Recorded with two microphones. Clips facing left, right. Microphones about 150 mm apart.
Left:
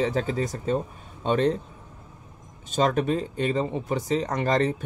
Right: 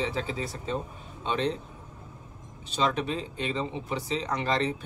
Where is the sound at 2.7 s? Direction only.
45° left (ahead or behind).